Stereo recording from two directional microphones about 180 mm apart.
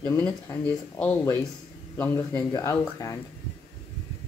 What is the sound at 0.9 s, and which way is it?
Speech, 10° left (ahead or behind).